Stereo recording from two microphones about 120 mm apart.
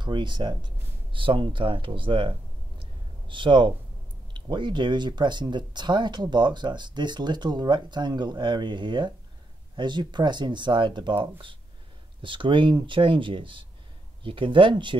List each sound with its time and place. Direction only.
0.0 s speech: 40° right (ahead or behind)